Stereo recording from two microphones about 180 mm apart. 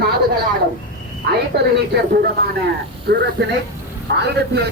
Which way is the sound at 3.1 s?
70° right (ahead or behind).